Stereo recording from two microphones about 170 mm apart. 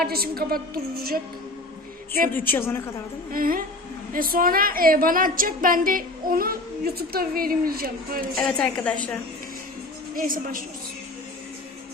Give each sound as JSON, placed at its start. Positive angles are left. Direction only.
{"t": 0.0, "sound": "a woman's voice", "side_deg": -65}
{"t": 2.3, "sound": "a woman's voice", "side_deg": 10}
{"t": 3.3, "sound": "a woman's voice", "side_deg": -60}
{"t": 8.4, "sound": "a woman's voice", "side_deg": 5}
{"t": 10.2, "sound": "a woman's voice", "side_deg": -55}